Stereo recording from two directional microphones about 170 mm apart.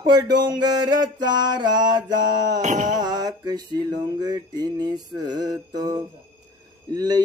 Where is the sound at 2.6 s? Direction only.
45° right (ahead or behind).